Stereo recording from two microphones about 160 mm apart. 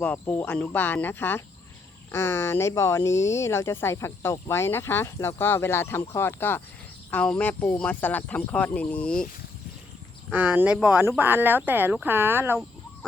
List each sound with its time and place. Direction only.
0.0 s speech: 10° left (ahead or behind)
10.3 s speech: 10° right (ahead or behind)